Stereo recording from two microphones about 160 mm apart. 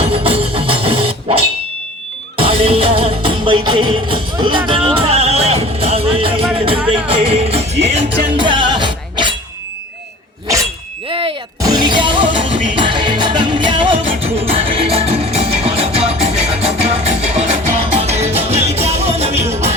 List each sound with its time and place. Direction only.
0.0 s music: 35° right (ahead or behind)
8.4 s music: 30° right (ahead or behind)
11.1 s music: 35° right (ahead or behind)